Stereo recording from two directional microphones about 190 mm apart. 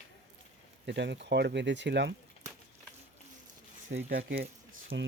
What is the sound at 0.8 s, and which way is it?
Speech, 65° right (ahead or behind).